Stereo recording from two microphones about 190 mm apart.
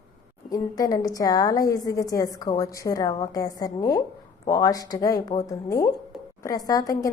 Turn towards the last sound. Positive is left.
turn(degrees=15)  # may be behind; listen again after turning